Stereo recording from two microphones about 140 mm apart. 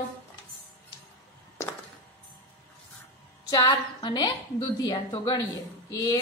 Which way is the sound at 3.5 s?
25° left (ahead or behind).